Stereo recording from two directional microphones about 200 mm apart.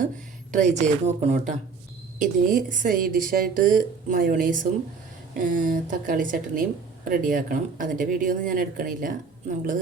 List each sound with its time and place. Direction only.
0.5 s a woman's voice: 35° right (ahead or behind)